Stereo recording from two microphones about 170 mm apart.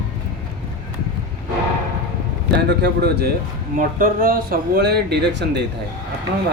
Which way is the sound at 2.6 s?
75° right (ahead or behind).